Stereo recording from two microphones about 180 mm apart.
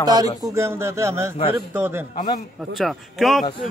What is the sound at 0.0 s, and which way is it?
A man's voice, 20° right (ahead or behind).